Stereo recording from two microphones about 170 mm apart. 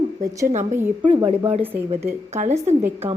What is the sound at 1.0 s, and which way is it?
A woman's voice, 25° right (ahead or behind).